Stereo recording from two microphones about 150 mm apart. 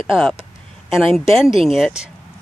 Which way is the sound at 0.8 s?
Centre (ahead or behind).